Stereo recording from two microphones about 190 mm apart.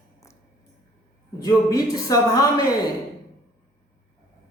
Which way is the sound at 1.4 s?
15° left (ahead or behind).